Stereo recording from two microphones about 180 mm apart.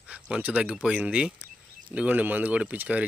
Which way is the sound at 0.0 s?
5° right (ahead or behind).